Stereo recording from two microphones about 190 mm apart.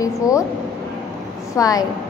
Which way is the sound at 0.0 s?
15° left (ahead or behind).